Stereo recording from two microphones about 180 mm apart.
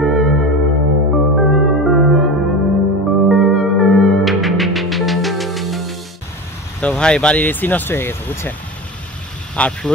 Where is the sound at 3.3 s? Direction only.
Centre (ahead or behind).